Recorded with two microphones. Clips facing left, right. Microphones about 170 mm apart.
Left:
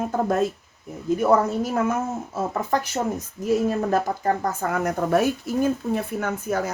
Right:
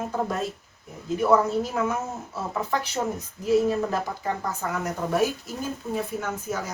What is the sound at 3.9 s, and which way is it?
Speech, 50° left (ahead or behind).